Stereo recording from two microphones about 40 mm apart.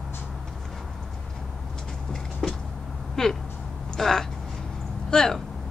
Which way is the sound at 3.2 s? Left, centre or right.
Centre.